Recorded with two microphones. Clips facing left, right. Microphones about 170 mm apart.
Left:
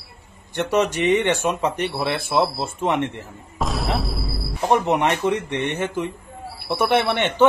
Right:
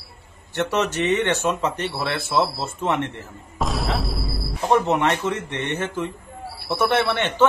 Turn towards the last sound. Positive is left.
turn(degrees=15)  # may be behind; listen again after turning